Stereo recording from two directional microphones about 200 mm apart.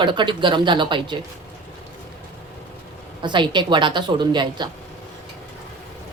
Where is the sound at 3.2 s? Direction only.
25° right (ahead or behind).